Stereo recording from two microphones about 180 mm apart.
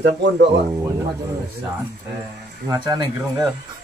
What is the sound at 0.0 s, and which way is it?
Speech, 75° right (ahead or behind).